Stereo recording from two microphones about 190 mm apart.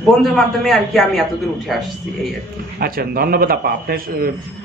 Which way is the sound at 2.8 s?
55° right (ahead or behind).